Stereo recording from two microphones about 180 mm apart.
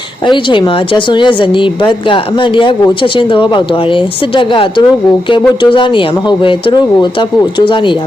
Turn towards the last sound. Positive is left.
turn(degrees=25)  # may be behind; listen again after turning